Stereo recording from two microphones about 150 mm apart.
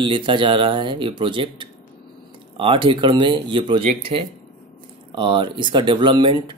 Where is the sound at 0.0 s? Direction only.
35° right (ahead or behind).